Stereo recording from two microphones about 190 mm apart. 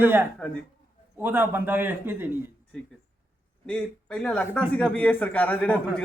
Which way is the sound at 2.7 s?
5° left (ahead or behind).